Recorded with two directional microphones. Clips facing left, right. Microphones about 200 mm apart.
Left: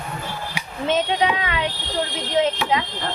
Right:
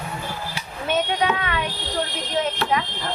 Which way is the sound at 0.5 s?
20° left (ahead or behind).